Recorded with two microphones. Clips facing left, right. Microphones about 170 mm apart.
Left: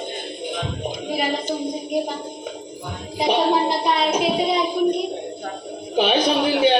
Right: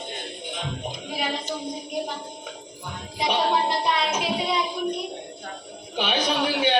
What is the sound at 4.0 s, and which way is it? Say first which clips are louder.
Music: left 6 dB; 35° left (ahead or behind).